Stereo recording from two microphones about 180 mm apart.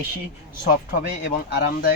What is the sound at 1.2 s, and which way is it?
Speech, 65° left (ahead or behind).